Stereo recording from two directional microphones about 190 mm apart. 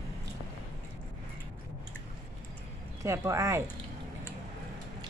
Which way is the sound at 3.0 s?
15° right (ahead or behind).